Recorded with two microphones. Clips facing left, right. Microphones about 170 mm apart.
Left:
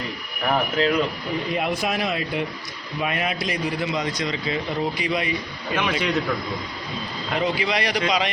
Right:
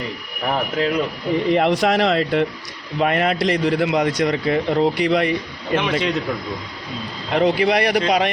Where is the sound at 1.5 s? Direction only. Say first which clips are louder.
Right 7 dB; 75° right (ahead or behind).